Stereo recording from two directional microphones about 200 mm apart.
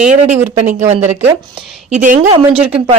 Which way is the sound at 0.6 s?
40° right (ahead or behind).